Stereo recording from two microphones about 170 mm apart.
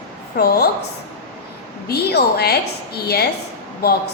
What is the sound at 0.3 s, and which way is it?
Speech, 70° left (ahead or behind).